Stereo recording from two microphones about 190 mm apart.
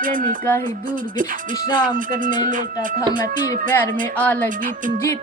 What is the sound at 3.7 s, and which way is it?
Speech, 10° left (ahead or behind).